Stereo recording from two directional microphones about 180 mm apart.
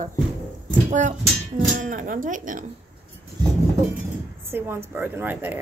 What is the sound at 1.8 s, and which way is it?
Speech, 50° right (ahead or behind).